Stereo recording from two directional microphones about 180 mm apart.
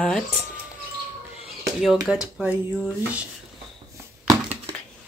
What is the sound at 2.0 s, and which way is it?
Speech, 5° right (ahead or behind).